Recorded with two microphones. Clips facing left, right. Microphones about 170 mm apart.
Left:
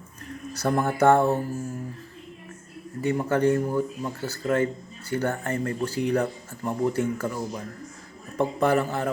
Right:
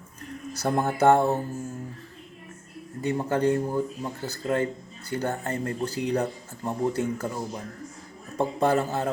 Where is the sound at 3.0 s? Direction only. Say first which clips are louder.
Left 2 dB; 20° right (ahead or behind).